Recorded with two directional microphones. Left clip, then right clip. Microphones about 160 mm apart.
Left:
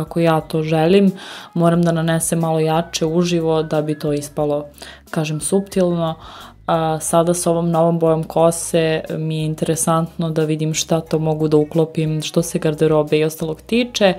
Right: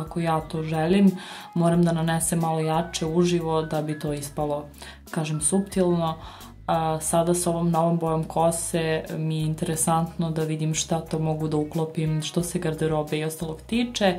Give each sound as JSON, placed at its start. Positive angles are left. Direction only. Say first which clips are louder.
{"t": 0.1, "sound": "speech", "louder": "left 9 dB", "side_deg": 40}